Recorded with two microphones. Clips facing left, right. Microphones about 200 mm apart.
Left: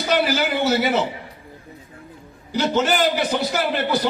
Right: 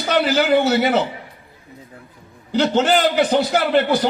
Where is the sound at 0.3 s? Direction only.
50° right (ahead or behind).